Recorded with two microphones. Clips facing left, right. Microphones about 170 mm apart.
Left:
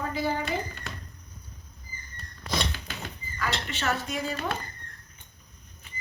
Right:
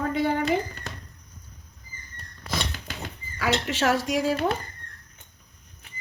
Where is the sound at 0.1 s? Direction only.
60° right (ahead or behind).